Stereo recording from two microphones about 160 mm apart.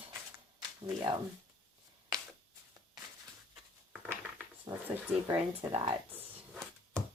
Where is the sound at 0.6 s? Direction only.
30° right (ahead or behind).